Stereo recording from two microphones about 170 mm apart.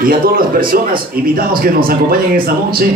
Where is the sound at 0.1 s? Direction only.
60° right (ahead or behind).